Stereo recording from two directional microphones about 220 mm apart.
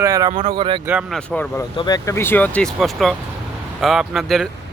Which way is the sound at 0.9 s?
Centre (ahead or behind).